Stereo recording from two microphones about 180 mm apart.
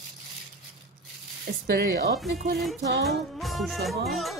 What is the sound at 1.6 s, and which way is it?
Speech, 60° right (ahead or behind).